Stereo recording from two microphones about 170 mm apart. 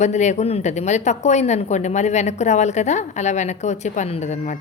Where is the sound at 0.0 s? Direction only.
45° left (ahead or behind).